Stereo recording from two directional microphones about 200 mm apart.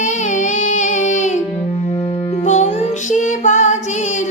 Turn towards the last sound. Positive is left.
turn(degrees=35)  # may be behind; listen again after turning